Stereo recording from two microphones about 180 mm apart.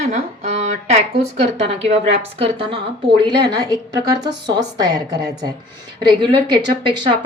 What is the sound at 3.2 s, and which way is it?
A woman's voice, 20° right (ahead or behind).